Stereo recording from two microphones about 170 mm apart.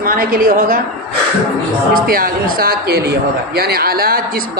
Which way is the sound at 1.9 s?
55° right (ahead or behind).